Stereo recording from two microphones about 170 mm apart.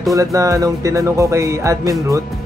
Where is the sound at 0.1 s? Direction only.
20° right (ahead or behind).